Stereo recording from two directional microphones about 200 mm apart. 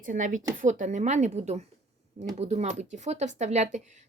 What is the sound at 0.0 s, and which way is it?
Speech, 40° right (ahead or behind).